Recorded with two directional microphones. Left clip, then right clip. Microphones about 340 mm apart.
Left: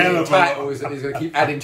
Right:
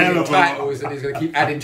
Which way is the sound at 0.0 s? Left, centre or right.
Centre.